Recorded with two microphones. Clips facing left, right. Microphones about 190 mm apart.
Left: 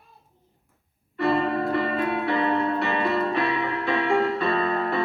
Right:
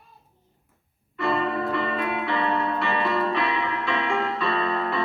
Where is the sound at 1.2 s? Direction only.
40° left (ahead or behind).